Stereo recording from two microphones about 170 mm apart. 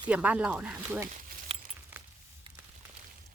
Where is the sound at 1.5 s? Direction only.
35° right (ahead or behind).